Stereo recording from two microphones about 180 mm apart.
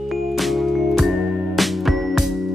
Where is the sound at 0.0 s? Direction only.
Centre (ahead or behind).